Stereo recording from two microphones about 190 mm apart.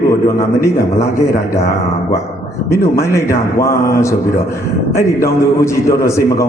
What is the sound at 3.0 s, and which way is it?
Speech, 15° left (ahead or behind).